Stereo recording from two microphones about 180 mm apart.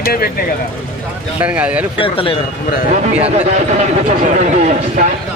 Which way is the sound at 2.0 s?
30° left (ahead or behind).